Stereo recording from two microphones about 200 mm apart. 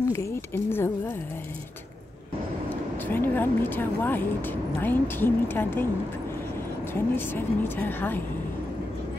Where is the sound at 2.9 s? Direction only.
10° left (ahead or behind).